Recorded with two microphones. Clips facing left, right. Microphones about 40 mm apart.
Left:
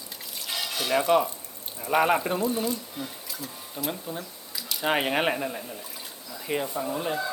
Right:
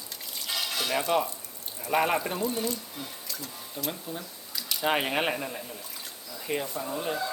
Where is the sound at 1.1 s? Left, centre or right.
Centre.